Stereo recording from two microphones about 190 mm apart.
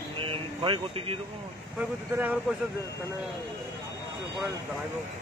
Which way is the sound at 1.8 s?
10° right (ahead or behind).